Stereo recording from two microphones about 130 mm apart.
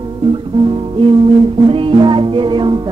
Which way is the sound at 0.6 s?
40° right (ahead or behind).